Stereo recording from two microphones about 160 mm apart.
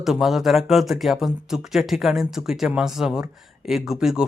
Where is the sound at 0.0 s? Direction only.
Centre (ahead or behind).